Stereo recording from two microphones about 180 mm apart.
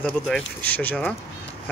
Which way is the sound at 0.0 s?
10° left (ahead or behind).